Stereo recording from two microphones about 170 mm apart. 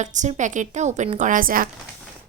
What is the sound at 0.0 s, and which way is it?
Speech, 45° right (ahead or behind).